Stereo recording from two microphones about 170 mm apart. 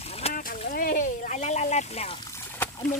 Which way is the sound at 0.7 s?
55° left (ahead or behind).